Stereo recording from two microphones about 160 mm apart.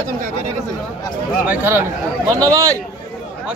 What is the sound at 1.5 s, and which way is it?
Speech, 15° right (ahead or behind).